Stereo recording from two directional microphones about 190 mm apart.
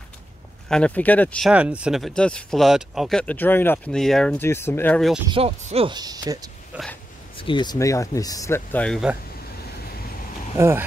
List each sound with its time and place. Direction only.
0.7 s speech: 5° left (ahead or behind)
1.5 s speech: 5° right (ahead or behind)
5.3 s speech: 30° right (ahead or behind)
6.7 s speech: 5° right (ahead or behind)
7.3 s speech: 25° left (ahead or behind); by 9.1 s 5° left (ahead or behind)
10.6 s speech: 10° right (ahead or behind)